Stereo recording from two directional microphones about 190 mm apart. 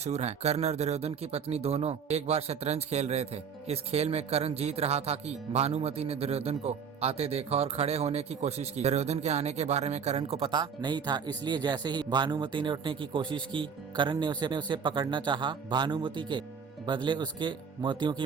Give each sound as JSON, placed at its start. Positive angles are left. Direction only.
{"t": 0.0, "sound": "speech", "side_deg": -35}